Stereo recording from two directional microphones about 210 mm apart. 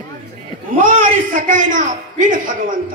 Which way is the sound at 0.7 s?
40° right (ahead or behind).